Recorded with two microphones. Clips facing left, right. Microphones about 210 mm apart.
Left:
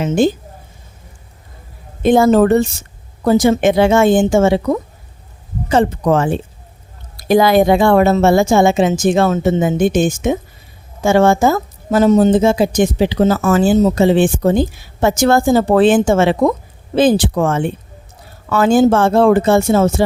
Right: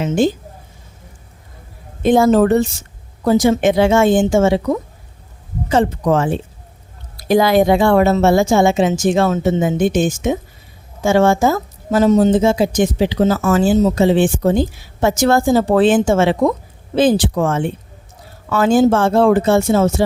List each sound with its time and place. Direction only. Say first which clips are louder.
2.0 s speech: left 1 dB; 55° left (ahead or behind)
5.6 s speech: left 1 dB; 60° left (ahead or behind)